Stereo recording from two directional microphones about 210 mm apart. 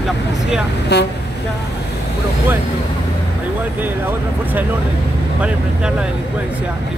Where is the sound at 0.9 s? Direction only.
50° left (ahead or behind).